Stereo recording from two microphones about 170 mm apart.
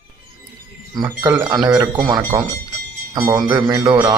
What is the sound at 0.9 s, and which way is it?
A man's voice, 20° right (ahead or behind).